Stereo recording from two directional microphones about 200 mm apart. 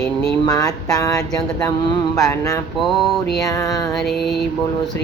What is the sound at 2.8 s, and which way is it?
Speech, centre (ahead or behind).